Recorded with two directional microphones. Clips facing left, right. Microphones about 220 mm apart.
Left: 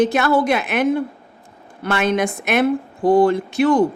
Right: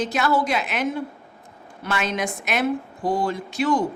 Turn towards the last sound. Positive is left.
turn(degrees=55)  # may be behind; listen again after turning